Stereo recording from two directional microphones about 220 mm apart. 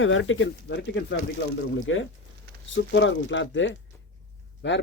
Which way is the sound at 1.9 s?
65° left (ahead or behind).